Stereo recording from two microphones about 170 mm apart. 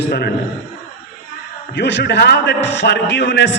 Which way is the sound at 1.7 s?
90° left.